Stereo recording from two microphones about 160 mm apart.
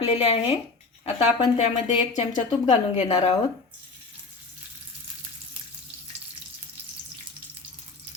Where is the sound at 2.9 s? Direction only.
45° left (ahead or behind).